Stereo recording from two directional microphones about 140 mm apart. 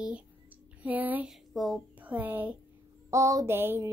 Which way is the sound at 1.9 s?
10° right (ahead or behind).